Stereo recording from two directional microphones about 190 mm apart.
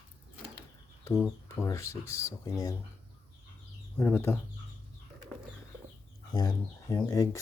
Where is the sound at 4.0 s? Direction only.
10° left (ahead or behind).